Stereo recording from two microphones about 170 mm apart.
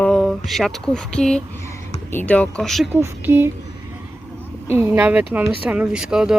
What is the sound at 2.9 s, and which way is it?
Speech, 15° right (ahead or behind).